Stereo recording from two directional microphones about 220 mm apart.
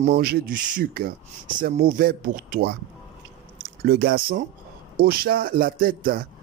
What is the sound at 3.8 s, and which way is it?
Speech, 45° right (ahead or behind).